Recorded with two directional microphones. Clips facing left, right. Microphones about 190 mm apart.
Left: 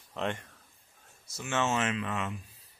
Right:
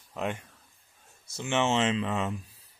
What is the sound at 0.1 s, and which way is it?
Speech, 10° right (ahead or behind).